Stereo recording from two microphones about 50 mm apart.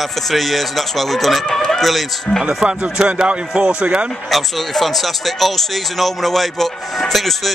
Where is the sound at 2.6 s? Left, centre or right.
Right.